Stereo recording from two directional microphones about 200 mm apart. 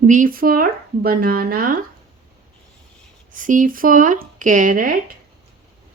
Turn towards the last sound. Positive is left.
turn(degrees=-40)  # may be behind; listen again after turning